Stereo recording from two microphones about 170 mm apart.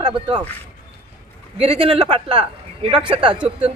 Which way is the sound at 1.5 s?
35° right (ahead or behind).